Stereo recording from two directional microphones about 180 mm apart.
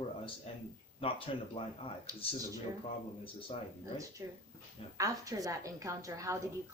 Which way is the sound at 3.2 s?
30° left (ahead or behind).